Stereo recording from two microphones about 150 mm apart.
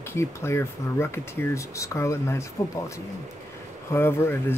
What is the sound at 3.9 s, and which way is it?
Speech, 15° left (ahead or behind).